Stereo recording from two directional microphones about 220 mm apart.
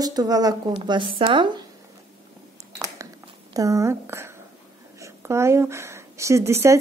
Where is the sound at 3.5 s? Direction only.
15° right (ahead or behind).